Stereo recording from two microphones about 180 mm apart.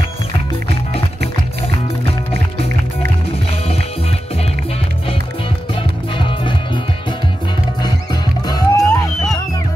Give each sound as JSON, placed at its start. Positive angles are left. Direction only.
{"t": 6.1, "sound": "music", "side_deg": 25}
{"t": 7.8, "sound": "music", "side_deg": 20}